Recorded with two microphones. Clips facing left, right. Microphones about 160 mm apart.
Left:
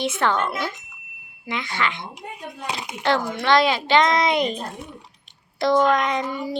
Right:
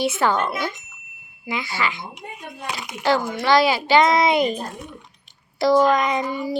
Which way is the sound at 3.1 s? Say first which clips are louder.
Right 1 dB; 5° right (ahead or behind).